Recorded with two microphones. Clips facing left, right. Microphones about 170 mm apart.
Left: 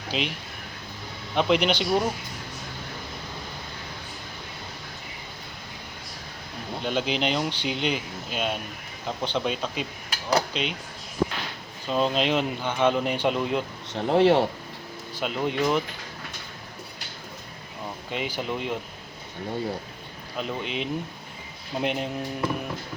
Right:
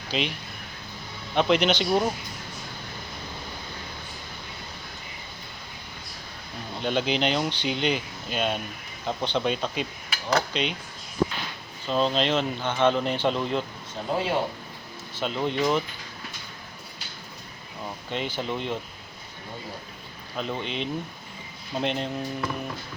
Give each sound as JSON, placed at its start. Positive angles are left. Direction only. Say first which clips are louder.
{"t": 0.1, "sound": "speech", "louder": "right 1 dB", "side_deg": 0}
{"t": 1.4, "sound": "speech", "louder": "even", "side_deg": 0}
{"t": 6.8, "sound": "speech", "louder": "right 1 dB", "side_deg": 0}
{"t": 11.9, "sound": "speech", "louder": "even", "side_deg": 5}
{"t": 13.9, "sound": "speech", "louder": "left 7 dB", "side_deg": 75}
{"t": 15.2, "sound": "speech", "louder": "even", "side_deg": 5}
{"t": 18.1, "sound": "speech", "louder": "even", "side_deg": 5}
{"t": 20.3, "sound": "speech", "louder": "even", "side_deg": 5}